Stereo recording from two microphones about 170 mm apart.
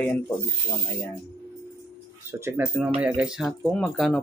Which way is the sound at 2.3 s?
10° right (ahead or behind).